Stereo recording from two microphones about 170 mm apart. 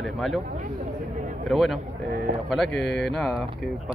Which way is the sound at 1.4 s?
Centre (ahead or behind).